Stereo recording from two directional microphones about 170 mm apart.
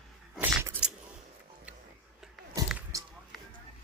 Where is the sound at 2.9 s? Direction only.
20° right (ahead or behind).